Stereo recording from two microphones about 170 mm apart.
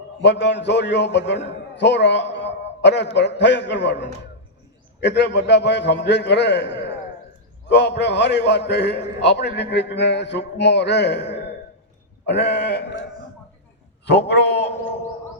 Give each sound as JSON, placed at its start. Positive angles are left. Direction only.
{"t": 0.2, "sound": "a man's voice", "side_deg": 90}
{"t": 14.1, "sound": "a man's voice", "side_deg": 80}